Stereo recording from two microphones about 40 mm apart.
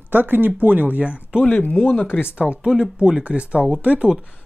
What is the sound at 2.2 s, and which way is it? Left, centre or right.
Speech, right.